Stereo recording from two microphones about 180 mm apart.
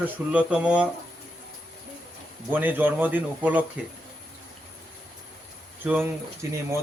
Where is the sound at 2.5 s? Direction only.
10° right (ahead or behind).